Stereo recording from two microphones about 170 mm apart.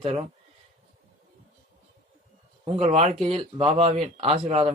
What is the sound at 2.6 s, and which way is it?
A man's voice, 40° right (ahead or behind).